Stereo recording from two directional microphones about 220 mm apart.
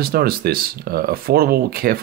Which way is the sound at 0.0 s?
45° right (ahead or behind).